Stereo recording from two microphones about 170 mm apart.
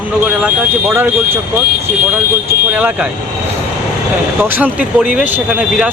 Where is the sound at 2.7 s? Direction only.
5° right (ahead or behind).